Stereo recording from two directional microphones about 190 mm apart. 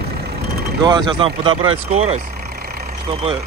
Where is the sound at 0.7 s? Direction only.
25° right (ahead or behind).